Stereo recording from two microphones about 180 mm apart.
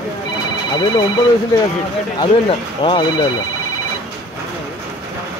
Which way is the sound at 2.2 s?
30° left (ahead or behind).